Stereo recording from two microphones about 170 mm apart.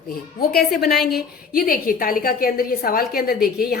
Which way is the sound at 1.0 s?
Centre (ahead or behind).